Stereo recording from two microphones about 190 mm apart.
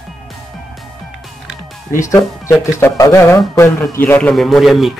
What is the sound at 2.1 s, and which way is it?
Speech, 15° left (ahead or behind).